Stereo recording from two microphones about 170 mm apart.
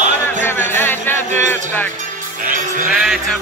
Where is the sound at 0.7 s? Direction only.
15° left (ahead or behind).